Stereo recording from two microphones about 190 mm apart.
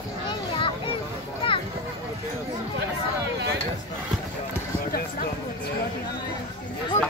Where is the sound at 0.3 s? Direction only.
25° left (ahead or behind).